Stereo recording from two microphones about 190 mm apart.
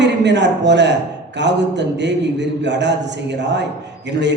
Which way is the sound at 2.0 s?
65° right (ahead or behind).